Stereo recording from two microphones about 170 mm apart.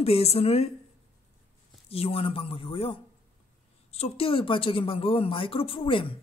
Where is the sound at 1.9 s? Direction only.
35° left (ahead or behind).